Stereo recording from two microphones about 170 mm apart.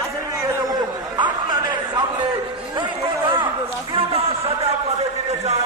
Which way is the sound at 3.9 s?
35° right (ahead or behind).